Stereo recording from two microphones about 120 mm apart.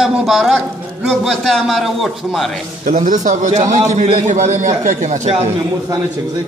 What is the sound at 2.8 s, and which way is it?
A man's voice, 90° right.